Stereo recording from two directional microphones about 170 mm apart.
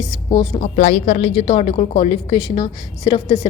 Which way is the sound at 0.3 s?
35° left (ahead or behind).